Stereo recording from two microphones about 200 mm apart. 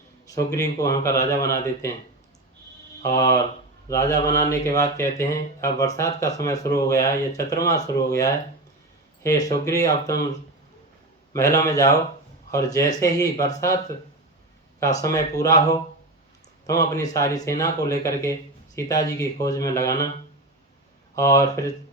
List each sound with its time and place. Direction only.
0.3 s speech: 15° left (ahead or behind)
3.2 s speech: 15° left (ahead or behind)
9.5 s speech: 15° left (ahead or behind)
11.3 s speech: 15° left (ahead or behind)
14.8 s speech: 15° left (ahead or behind)
16.6 s speech: 15° left (ahead or behind)
21.2 s speech: 15° left (ahead or behind)